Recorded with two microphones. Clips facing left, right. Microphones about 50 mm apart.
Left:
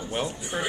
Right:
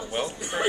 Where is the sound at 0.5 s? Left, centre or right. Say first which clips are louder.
Right 4 dB; right.